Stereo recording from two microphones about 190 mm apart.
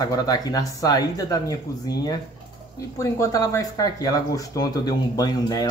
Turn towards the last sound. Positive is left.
turn(degrees=20)  # may be behind; listen again after turning